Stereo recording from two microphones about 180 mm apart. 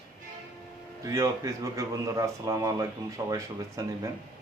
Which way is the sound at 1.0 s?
15° right (ahead or behind).